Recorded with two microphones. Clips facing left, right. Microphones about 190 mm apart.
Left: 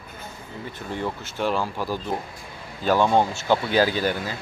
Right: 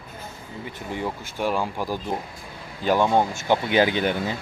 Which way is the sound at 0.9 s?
10° right (ahead or behind).